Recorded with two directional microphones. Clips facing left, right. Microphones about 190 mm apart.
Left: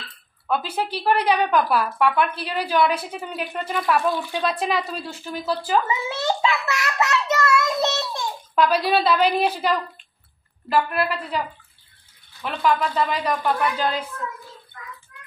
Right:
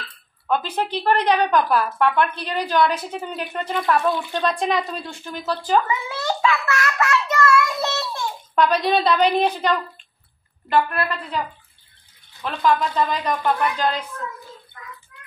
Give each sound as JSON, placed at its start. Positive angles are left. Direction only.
{"t": 0.5, "sound": "a woman's voice", "side_deg": 5}
{"t": 5.9, "sound": "a child's voice", "side_deg": 25}
{"t": 6.7, "sound": "child singing", "side_deg": 20}
{"t": 8.5, "sound": "a woman's voice", "side_deg": 5}
{"t": 12.4, "sound": "a woman's voice", "side_deg": 0}